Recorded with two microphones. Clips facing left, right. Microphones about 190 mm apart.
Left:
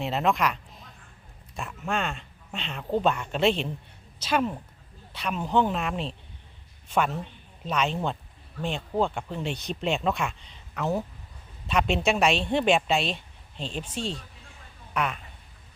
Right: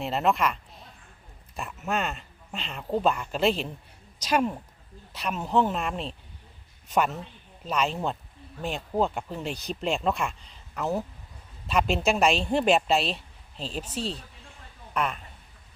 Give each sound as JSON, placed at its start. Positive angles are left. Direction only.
{"t": 0.0, "sound": "a woman's voice", "side_deg": 0}
{"t": 7.6, "sound": "speech", "side_deg": 0}